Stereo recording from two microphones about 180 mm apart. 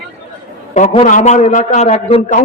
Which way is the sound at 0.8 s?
45° left (ahead or behind).